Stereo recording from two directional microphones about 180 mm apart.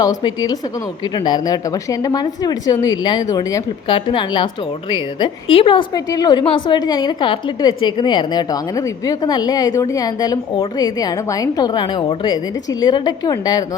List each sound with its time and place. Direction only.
0.0 s a woman's voice: 25° left (ahead or behind)